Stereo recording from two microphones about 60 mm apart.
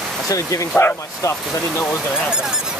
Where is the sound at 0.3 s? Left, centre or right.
Left.